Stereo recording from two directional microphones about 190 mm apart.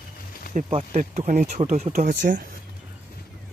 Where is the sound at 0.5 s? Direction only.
40° right (ahead or behind).